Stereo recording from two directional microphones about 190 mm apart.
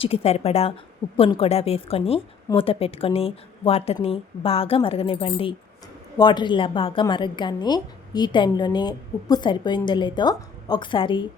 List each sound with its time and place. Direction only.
0.0 s a woman's voice: 30° left (ahead or behind)